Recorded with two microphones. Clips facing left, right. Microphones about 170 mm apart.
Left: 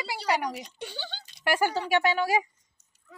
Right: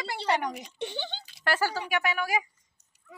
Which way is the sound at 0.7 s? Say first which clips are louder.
Right 4 dB; 20° right (ahead or behind).